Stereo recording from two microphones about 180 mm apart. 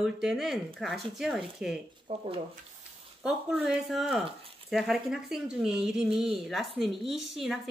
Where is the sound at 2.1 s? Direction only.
25° right (ahead or behind).